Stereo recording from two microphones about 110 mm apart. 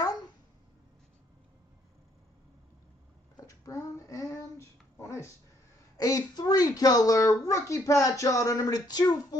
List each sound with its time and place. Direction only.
3.4 s a child's voice: 30° left (ahead or behind)